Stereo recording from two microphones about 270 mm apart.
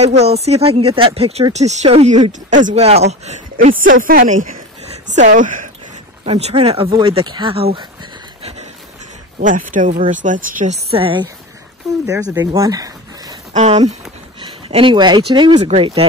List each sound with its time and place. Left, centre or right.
0.0 s speech: right
8.4 s a sound: right
9.7 s speech: right; by 13.4 s centre
13.5 s speech: right